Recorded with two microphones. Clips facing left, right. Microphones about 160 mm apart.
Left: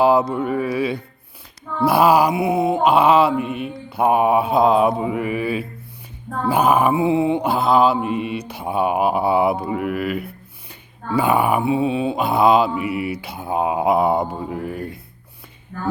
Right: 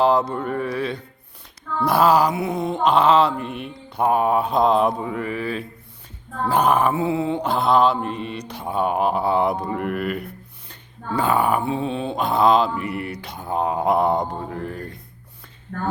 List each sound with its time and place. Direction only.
0.0 s mantra: 5° left (ahead or behind)
15.7 s speech: 60° right (ahead or behind)